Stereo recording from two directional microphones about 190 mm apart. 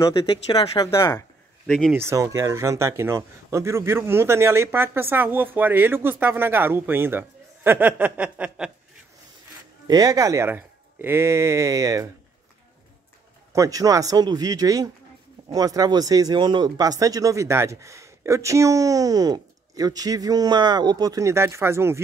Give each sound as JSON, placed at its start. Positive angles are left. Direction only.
{"t": 0.3, "sound": "speech", "side_deg": 25}
{"t": 1.7, "sound": "speech", "side_deg": 5}
{"t": 2.0, "sound": "speech", "side_deg": -15}
{"t": 9.8, "sound": "speech", "side_deg": -20}
{"t": 13.5, "sound": "speech", "side_deg": -15}